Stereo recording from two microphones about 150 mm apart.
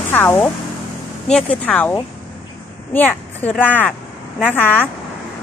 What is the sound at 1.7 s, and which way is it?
A woman's voice, 10° left (ahead or behind).